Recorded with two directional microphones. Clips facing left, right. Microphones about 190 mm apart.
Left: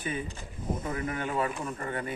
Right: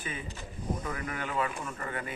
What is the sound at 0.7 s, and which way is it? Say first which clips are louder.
A man's voice: left 3 dB; 25° left (ahead or behind).